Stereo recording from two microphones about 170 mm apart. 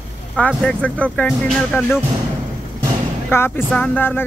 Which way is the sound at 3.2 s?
15° left (ahead or behind).